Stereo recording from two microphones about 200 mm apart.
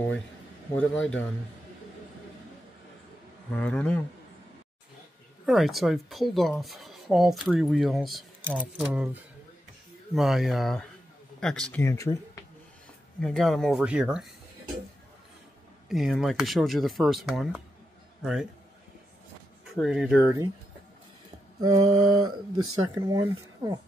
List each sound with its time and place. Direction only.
0.7 s speech: 5° left (ahead or behind)
3.5 s speech: 5° left (ahead or behind)
5.4 s speech: centre (ahead or behind); by 12.2 s 15° left (ahead or behind)
13.2 s speech: centre (ahead or behind)
15.9 s a man's voice: centre (ahead or behind)
19.7 s speech: centre (ahead or behind)
21.8 s speech: 20° right (ahead or behind)